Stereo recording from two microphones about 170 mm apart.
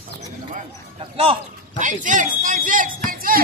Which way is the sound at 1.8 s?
50° right (ahead or behind).